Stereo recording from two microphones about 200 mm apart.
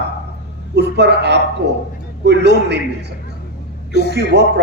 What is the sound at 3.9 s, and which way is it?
Speech, 55° left (ahead or behind).